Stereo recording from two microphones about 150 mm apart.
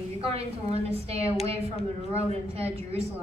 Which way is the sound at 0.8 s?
40° right (ahead or behind).